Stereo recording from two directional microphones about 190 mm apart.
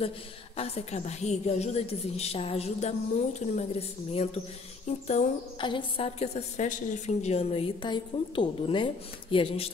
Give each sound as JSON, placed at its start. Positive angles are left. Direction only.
{"t": 0.6, "sound": "a woman's voice", "side_deg": 35}